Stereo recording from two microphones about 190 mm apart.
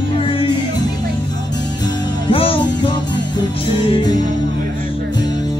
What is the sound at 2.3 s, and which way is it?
Music, 30° left (ahead or behind).